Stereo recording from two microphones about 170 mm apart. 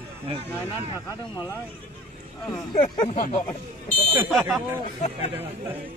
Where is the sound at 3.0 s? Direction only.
35° left (ahead or behind).